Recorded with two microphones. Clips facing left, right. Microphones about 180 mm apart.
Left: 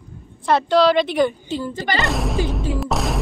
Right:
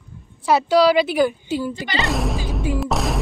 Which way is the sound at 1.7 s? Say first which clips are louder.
Left 3 dB; 50° left (ahead or behind).